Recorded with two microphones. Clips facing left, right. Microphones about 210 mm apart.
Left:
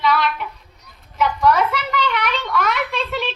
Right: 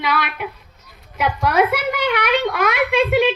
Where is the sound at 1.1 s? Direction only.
55° right (ahead or behind).